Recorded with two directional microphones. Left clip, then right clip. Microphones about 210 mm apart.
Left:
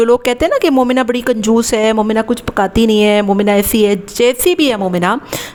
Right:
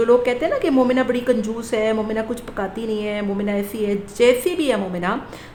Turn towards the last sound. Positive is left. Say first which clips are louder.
# left 7 dB
turn(degrees=45)  # may be behind; listen again after turning